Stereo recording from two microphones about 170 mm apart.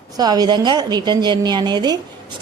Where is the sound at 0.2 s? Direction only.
25° right (ahead or behind).